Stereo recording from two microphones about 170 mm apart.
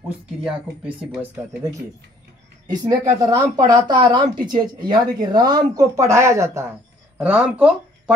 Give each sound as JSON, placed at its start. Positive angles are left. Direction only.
{"t": 0.5, "sound": "speech", "side_deg": -5}
{"t": 2.7, "sound": "speech", "side_deg": -20}
{"t": 7.2, "sound": "speech", "side_deg": -5}